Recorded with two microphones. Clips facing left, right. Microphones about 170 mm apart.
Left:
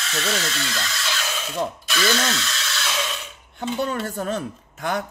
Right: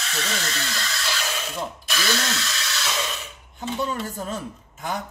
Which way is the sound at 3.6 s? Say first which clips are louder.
Left 2 dB; 65° left (ahead or behind).